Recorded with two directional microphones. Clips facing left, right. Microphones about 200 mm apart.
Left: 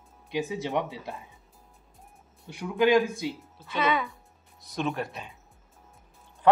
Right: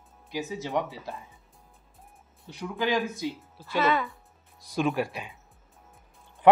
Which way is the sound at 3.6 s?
Centre (ahead or behind).